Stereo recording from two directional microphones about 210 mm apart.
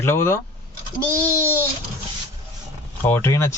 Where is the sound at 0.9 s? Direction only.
15° right (ahead or behind).